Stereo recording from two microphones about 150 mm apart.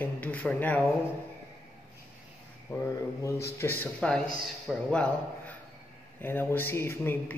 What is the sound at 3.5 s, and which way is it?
Mantra, 15° left (ahead or behind).